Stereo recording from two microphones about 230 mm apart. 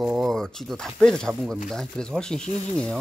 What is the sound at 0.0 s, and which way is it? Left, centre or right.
Speech, centre.